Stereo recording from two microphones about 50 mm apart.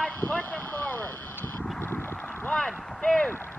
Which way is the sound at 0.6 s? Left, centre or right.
Left.